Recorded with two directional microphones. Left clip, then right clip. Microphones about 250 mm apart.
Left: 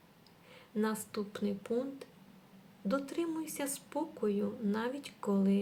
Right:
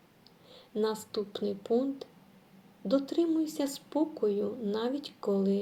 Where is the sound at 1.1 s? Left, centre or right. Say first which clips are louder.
Right 5 dB; left.